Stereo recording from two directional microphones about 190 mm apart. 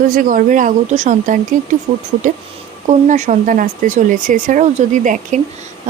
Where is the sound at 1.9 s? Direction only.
25° right (ahead or behind).